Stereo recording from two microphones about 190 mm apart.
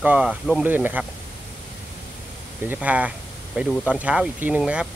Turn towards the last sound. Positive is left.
turn(degrees=-5)  # may be behind; listen again after turning